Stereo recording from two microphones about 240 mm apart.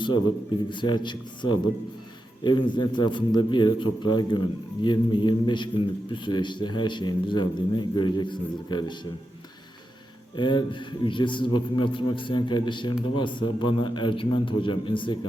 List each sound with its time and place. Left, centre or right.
0.7 s a man's voice: centre
10.3 s a man's voice: centre